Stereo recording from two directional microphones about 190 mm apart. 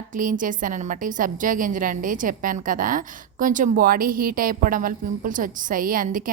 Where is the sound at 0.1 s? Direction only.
45° right (ahead or behind).